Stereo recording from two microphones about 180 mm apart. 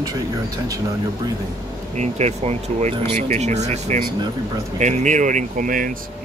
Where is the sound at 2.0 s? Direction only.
40° right (ahead or behind).